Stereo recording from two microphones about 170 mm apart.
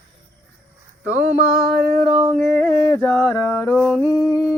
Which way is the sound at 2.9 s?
15° left (ahead or behind).